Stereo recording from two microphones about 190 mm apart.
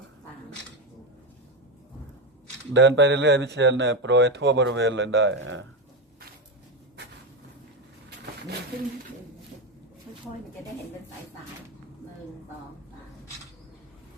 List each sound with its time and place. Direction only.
2.7 s speech: 70° right (ahead or behind)